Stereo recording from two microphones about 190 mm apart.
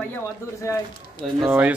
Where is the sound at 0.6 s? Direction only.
15° left (ahead or behind).